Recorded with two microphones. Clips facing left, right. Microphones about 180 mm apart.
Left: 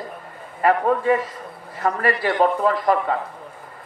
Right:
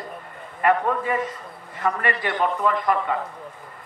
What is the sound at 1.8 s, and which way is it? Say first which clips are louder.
A man's voice: left 4 dB; 35° left (ahead or behind).